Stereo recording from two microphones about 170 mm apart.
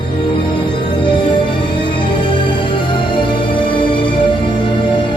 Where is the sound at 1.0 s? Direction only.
30° left (ahead or behind).